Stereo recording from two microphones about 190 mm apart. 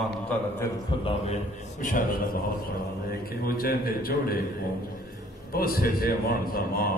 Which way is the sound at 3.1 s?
50° left (ahead or behind).